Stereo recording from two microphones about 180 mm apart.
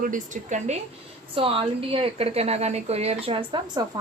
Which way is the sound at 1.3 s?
30° right (ahead or behind).